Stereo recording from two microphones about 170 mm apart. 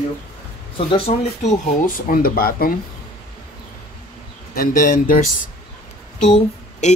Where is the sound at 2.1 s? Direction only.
60° left (ahead or behind).